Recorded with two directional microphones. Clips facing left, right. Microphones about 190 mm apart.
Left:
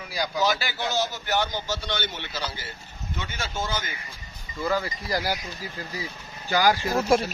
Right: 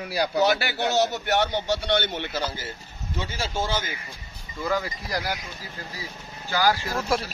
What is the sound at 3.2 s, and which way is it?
Speech, 30° right (ahead or behind).